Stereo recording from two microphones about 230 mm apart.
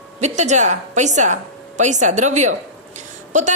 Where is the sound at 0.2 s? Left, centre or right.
Right.